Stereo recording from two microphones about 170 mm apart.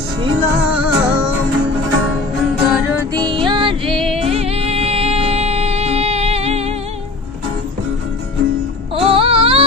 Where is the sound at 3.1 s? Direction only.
30° right (ahead or behind).